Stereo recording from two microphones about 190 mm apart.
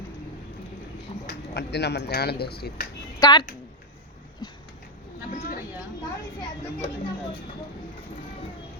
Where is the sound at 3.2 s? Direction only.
20° left (ahead or behind).